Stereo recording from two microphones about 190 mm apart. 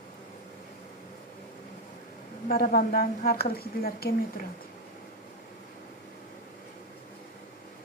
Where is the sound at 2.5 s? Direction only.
50° left (ahead or behind).